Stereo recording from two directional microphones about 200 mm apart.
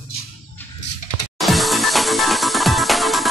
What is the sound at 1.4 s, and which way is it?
Music, centre (ahead or behind).